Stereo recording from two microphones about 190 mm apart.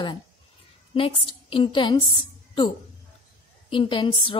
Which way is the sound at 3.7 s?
25° left (ahead or behind).